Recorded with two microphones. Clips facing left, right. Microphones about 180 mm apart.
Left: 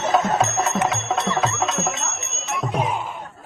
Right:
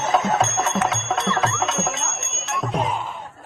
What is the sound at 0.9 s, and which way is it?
Music, centre (ahead or behind).